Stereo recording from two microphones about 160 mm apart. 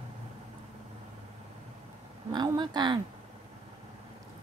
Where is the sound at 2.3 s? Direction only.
25° right (ahead or behind).